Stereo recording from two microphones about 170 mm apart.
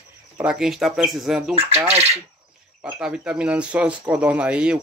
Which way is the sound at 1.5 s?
35° right (ahead or behind).